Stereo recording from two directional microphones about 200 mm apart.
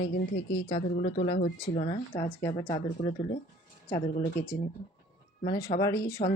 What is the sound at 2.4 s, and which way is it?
Speech, 20° left (ahead or behind).